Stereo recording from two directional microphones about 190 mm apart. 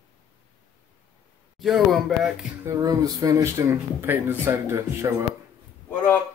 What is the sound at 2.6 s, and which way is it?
Speech, 15° right (ahead or behind).